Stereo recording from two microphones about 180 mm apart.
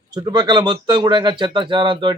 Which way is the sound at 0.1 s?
20° right (ahead or behind).